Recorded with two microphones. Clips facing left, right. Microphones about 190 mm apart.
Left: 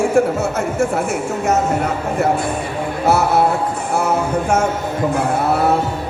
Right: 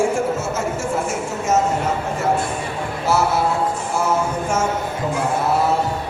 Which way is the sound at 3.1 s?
60° left (ahead or behind).